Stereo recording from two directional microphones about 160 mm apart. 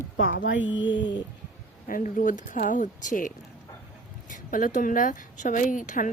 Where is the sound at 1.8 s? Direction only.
60° left (ahead or behind).